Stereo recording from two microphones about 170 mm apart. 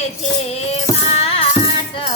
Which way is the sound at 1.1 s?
35° left (ahead or behind).